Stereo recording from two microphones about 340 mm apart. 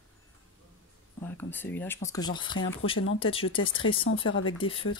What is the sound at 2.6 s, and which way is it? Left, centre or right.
Speech, left.